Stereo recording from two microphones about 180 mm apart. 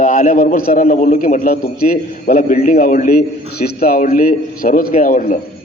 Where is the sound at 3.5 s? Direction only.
60° left (ahead or behind).